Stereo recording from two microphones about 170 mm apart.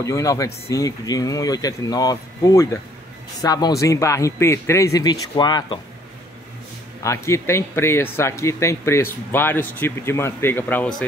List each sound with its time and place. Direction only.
0.0 s speech: 20° left (ahead or behind)
7.0 s speech: 15° left (ahead or behind)